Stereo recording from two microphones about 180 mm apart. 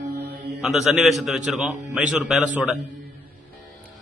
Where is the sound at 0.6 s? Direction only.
Centre (ahead or behind).